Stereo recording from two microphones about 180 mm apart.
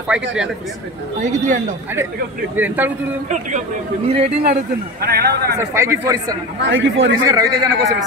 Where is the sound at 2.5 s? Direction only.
10° right (ahead or behind).